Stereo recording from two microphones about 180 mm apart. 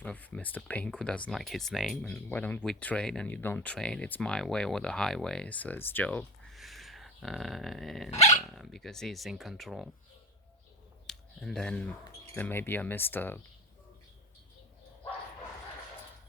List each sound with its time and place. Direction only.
0.0 s speech: 10° left (ahead or behind)
8.1 s dog: 15° left (ahead or behind)
8.4 s speech: centre (ahead or behind)
11.0 s speech: centre (ahead or behind)